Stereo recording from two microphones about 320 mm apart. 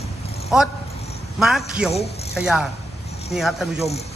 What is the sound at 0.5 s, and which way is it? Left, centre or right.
Speech, centre.